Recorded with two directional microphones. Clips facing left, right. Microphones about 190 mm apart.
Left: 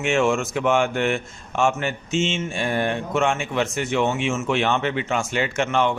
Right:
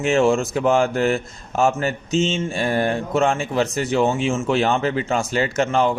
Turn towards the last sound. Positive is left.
turn(degrees=-35)  # may be behind; listen again after turning